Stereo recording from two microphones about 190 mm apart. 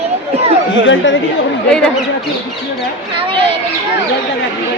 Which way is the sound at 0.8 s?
80° left.